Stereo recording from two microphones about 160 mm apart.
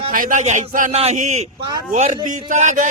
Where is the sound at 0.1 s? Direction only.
55° right (ahead or behind).